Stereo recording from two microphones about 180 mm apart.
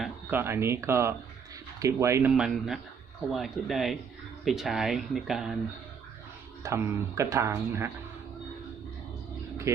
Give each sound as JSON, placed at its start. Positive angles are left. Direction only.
{"t": 0.0, "sound": "speech", "side_deg": -10}
{"t": 2.3, "sound": "speech", "side_deg": -5}
{"t": 6.6, "sound": "speech", "side_deg": -15}
{"t": 9.7, "sound": "speech", "side_deg": -15}